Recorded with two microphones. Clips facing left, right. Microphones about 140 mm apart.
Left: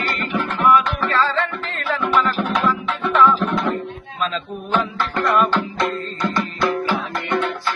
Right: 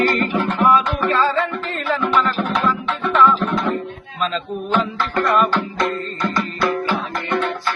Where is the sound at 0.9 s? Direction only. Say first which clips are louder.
Right 2 dB; 15° right (ahead or behind).